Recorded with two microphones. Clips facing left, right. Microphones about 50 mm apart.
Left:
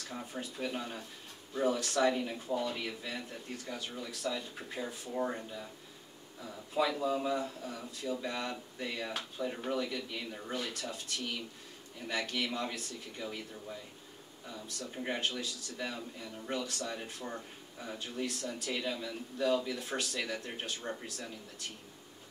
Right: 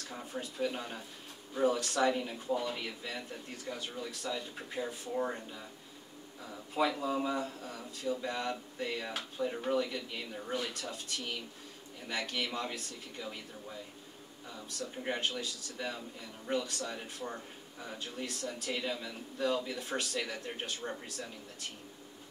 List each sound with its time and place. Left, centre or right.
0.3 s speech: centre
6.7 s a man's voice: centre
15.0 s speech: centre